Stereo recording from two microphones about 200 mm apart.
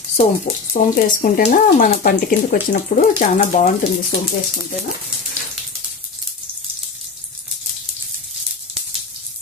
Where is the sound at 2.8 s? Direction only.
30° left (ahead or behind).